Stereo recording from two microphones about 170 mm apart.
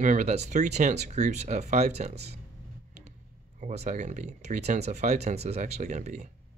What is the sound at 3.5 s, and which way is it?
Speech, 45° right (ahead or behind).